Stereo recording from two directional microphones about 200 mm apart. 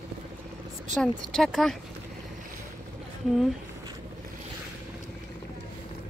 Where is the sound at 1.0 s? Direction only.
Centre (ahead or behind).